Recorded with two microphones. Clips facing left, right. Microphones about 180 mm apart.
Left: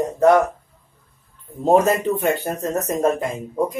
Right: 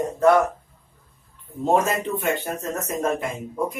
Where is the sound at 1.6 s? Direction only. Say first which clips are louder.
Left 5 dB; 35° left (ahead or behind).